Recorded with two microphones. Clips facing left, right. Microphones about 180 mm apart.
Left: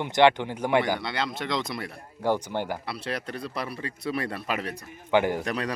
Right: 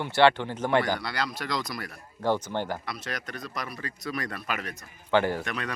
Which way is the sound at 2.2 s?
10° left (ahead or behind).